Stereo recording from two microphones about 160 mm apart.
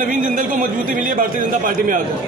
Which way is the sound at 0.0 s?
60° right (ahead or behind).